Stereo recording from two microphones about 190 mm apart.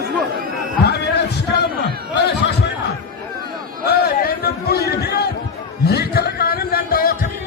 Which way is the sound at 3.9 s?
55° left (ahead or behind).